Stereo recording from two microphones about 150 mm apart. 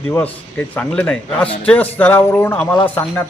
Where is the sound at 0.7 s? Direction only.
10° left (ahead or behind).